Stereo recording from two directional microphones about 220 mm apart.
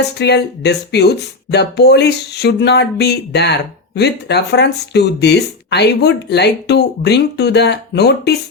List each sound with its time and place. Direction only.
0.2 s speech: 50° left (ahead or behind)